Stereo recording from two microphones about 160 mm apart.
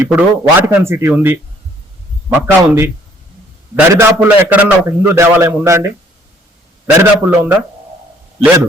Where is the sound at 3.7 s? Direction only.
20° right (ahead or behind).